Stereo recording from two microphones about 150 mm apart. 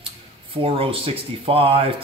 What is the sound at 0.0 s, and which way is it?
Speech, 40° right (ahead or behind).